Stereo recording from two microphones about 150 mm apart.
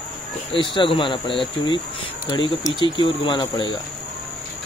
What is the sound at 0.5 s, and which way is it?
Speech, 35° left (ahead or behind).